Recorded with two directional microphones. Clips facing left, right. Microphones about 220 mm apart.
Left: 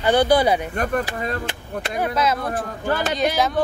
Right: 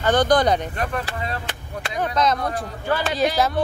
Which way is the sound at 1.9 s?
5° left (ahead or behind).